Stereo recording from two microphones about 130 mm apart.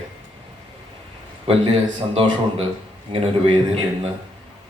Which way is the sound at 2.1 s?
50° right (ahead or behind).